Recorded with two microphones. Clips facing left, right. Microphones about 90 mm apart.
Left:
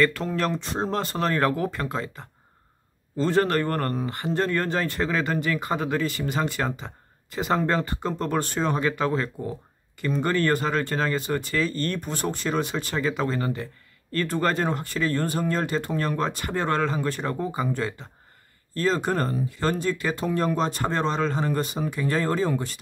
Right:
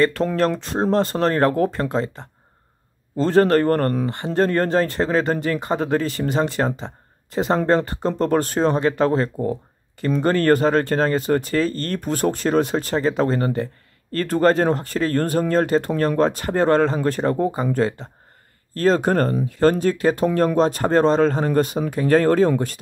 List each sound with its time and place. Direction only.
0.2 s speech: 30° right (ahead or behind)
0.6 s speech: 45° right (ahead or behind)
4.0 s speech: 30° right (ahead or behind)
4.4 s speech: 40° right (ahead or behind)
18.8 s speech: 50° right (ahead or behind)